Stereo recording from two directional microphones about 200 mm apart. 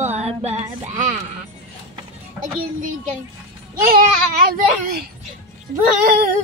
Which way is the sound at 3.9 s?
45° right (ahead or behind).